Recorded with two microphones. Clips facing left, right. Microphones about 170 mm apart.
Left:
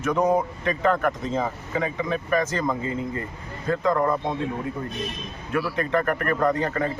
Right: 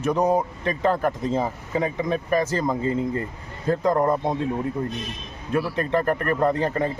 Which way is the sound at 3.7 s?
35° right (ahead or behind).